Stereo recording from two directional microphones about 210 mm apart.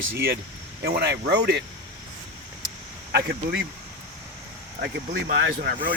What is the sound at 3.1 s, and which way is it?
Speech, 55° right (ahead or behind).